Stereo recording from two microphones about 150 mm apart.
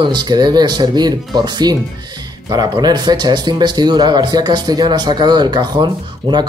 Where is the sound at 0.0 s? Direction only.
30° right (ahead or behind).